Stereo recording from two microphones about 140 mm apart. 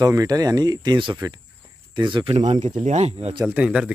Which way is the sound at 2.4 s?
55° right (ahead or behind).